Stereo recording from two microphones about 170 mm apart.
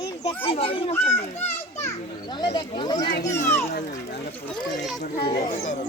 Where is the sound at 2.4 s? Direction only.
25° left (ahead or behind).